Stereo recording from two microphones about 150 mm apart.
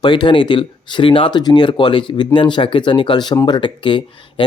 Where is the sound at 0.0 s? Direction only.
30° left (ahead or behind).